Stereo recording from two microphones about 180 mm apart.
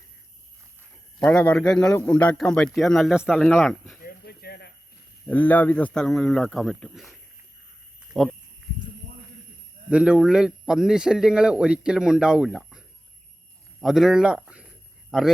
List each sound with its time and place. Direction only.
1.2 s a man's voice: 5° left (ahead or behind)
4.0 s a sound: 60° left (ahead or behind)
5.3 s a man's voice: 10° left (ahead or behind)
9.9 s a man's voice: 5° right (ahead or behind)
13.8 s a man's voice: centre (ahead or behind)